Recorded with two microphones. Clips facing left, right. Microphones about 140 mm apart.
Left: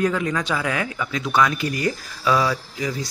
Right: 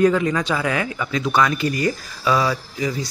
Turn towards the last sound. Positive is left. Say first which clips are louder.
# right 2 dB
turn(degrees=0)  # may be behind; listen again after turning